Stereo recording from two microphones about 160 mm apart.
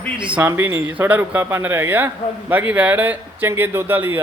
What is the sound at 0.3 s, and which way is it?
Speech, 15° right (ahead or behind).